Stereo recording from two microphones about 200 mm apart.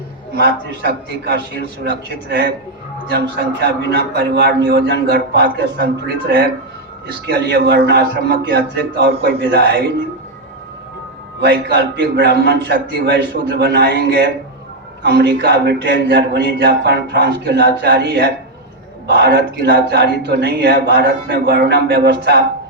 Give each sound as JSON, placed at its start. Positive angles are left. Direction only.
{"t": 0.3, "sound": "a man's voice", "side_deg": -55}
{"t": 3.1, "sound": "a man's voice", "side_deg": -55}
{"t": 11.3, "sound": "speech", "side_deg": -55}